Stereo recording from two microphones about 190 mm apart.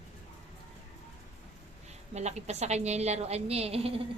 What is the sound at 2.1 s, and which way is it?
A woman's voice, 35° right (ahead or behind).